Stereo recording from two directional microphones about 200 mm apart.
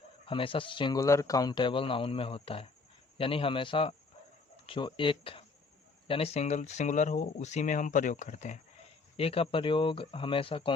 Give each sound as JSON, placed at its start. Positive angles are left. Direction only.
{"t": 0.3, "sound": "speech", "side_deg": 25}